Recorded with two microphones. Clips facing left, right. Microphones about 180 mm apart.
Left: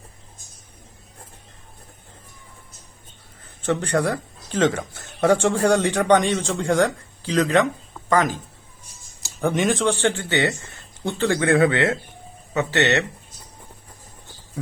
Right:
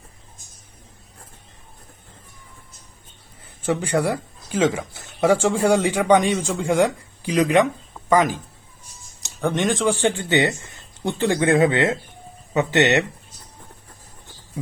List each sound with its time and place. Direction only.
3.6 s speech: 5° right (ahead or behind)
9.2 s speech: 5° left (ahead or behind)
9.9 s speech: 15° right (ahead or behind)